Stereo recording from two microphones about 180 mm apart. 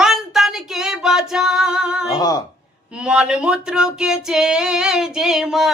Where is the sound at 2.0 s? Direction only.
20° left (ahead or behind).